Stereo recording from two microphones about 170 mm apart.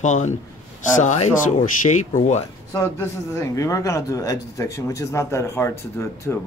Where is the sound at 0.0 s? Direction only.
45° left (ahead or behind).